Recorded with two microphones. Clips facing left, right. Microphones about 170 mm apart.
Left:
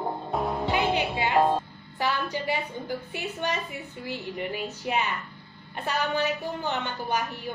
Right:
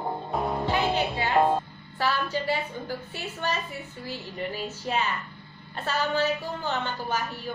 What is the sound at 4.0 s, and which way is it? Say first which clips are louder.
Music: left 2 dB; 15° left (ahead or behind).